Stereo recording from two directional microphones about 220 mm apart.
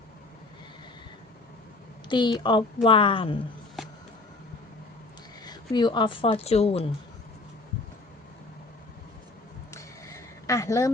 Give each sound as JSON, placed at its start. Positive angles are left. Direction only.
{"t": 2.0, "sound": "speech", "side_deg": 20}
{"t": 5.5, "sound": "speech", "side_deg": 20}
{"t": 9.7, "sound": "a sound", "side_deg": 15}